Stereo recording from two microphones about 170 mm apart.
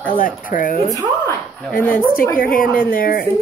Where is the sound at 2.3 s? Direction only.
55° left (ahead or behind).